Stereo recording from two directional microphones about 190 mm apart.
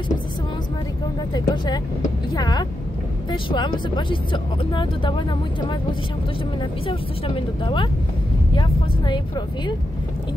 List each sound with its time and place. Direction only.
1.3 s speech: 20° left (ahead or behind)
6.6 s speech: 25° left (ahead or behind)